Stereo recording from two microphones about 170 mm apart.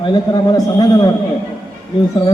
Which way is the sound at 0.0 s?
25° left (ahead or behind).